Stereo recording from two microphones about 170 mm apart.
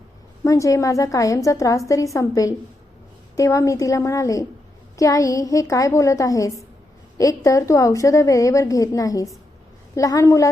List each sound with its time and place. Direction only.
0.4 s a woman's voice: 20° left (ahead or behind)